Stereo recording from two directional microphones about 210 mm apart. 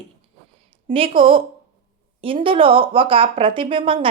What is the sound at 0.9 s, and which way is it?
Speech, 25° right (ahead or behind).